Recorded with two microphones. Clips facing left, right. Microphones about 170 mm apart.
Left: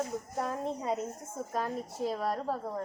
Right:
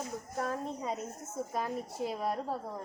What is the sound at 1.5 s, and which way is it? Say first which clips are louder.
Speech: left 2 dB; 10° right (ahead or behind).